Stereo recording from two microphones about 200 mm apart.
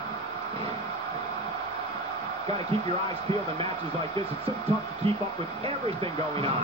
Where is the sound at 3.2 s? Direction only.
30° right (ahead or behind).